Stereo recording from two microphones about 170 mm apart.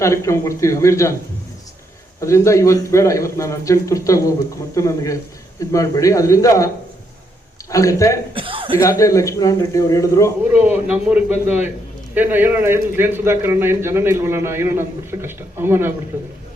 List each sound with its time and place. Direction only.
0.0 s a man's voice: 15° left (ahead or behind)
2.2 s a man's voice: 15° left (ahead or behind)
7.7 s a man's voice: 20° left (ahead or behind)
8.4 s speech: 30° right (ahead or behind)
8.8 s a man's voice: 20° left (ahead or behind)
10.5 s a man's voice: 10° right (ahead or behind)